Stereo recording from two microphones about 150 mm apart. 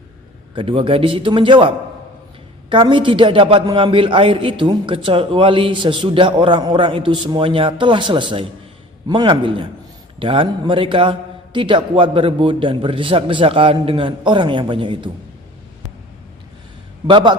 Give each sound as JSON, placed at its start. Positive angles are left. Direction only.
{"t": 0.5, "sound": "a man's voice", "side_deg": -40}
{"t": 17.1, "sound": "a man's voice", "side_deg": -30}